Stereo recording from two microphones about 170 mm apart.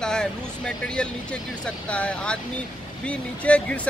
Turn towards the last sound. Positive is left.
turn(degrees=10)  # may be behind; listen again after turning